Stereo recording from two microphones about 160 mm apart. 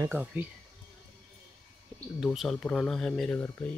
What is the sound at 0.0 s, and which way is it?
Speech, 10° right (ahead or behind).